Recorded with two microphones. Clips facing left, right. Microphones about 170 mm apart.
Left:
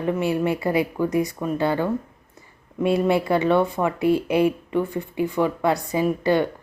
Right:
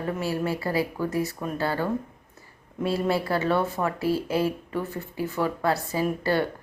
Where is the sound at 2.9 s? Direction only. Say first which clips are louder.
Left 5 dB; 20° left (ahead or behind).